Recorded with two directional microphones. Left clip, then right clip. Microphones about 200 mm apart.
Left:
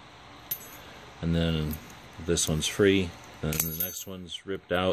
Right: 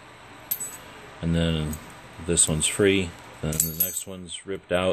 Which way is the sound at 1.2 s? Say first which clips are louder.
Right 3 dB; 20° left (ahead or behind).